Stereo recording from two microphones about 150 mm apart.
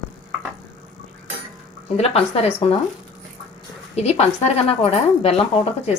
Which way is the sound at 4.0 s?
45° left (ahead or behind).